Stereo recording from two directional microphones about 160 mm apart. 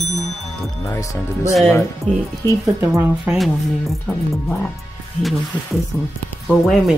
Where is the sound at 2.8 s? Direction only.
15° right (ahead or behind).